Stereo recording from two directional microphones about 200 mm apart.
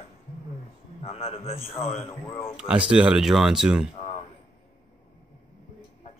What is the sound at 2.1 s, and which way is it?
Speech, 10° left (ahead or behind).